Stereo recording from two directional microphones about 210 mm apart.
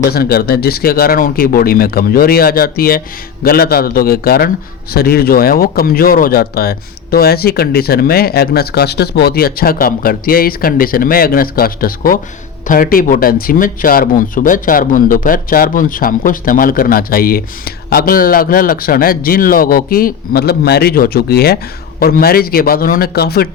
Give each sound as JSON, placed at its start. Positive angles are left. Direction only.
{"t": 0.1, "sound": "speech", "side_deg": 45}